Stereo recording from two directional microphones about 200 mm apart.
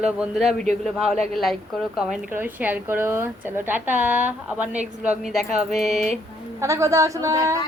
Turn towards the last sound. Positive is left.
turn(degrees=-15)  # may be behind; listen again after turning